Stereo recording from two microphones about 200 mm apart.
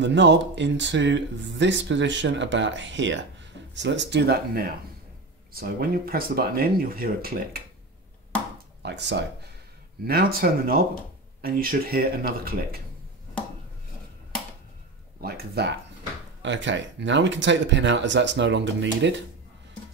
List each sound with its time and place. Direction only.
0.0 s speech: 60° right (ahead or behind)
8.8 s speech: 60° right (ahead or behind)
10.0 s speech: 50° right (ahead or behind)
15.2 s speech: 55° right (ahead or behind)
16.4 s speech: 65° right (ahead or behind)